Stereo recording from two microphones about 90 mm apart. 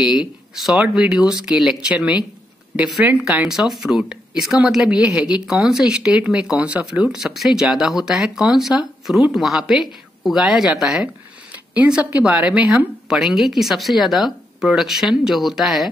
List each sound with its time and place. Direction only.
0.7 s speech: 15° right (ahead or behind)
3.3 s speech: 5° right (ahead or behind)